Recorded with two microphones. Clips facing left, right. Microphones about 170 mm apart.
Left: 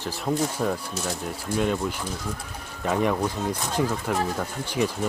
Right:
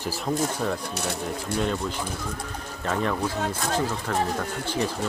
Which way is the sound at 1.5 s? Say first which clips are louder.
Left 2 dB; 70° right (ahead or behind).